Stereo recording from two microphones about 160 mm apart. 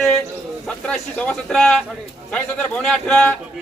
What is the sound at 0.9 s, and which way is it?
A man's voice, 5° left (ahead or behind).